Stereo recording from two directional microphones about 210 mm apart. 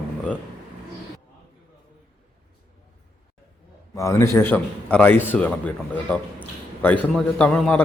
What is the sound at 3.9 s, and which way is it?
A man's voice, 15° left (ahead or behind).